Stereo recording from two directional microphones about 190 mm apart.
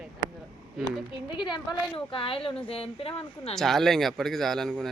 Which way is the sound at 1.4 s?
25° left (ahead or behind).